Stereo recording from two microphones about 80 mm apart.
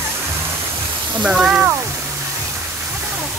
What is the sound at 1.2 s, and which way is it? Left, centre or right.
Speech, centre.